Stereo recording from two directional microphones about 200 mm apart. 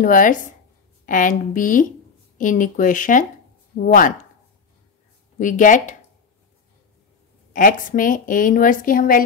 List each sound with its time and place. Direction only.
0.0 s speech: 40° left (ahead or behind)
5.4 s speech: 40° left (ahead or behind)
7.5 s a woman's voice: 40° left (ahead or behind)